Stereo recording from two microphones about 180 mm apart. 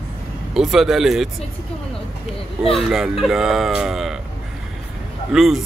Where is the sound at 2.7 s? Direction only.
Centre (ahead or behind).